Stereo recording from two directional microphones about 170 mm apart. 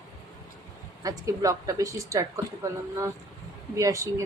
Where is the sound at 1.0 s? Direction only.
20° right (ahead or behind).